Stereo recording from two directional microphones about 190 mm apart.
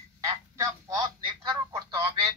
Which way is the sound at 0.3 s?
20° right (ahead or behind).